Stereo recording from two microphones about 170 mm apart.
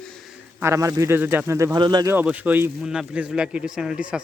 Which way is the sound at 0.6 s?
15° right (ahead or behind).